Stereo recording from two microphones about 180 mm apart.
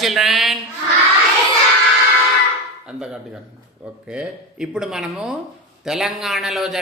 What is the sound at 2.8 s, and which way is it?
A man's voice, 5° right (ahead or behind).